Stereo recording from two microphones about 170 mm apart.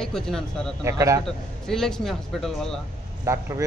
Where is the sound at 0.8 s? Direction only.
20° right (ahead or behind).